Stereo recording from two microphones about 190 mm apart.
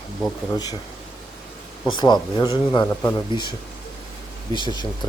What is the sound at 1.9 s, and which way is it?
Speech, 20° left (ahead or behind).